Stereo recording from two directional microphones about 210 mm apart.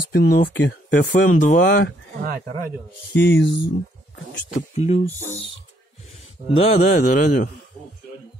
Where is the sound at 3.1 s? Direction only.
55° left (ahead or behind).